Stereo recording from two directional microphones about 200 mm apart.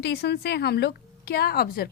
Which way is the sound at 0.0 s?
55° left (ahead or behind).